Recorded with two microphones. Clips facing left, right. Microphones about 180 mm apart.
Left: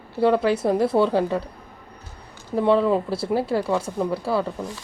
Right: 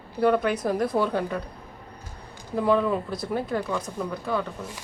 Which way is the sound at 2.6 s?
30° left (ahead or behind).